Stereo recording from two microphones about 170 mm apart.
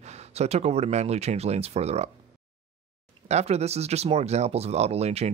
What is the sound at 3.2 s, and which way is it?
Speech, 40° right (ahead or behind).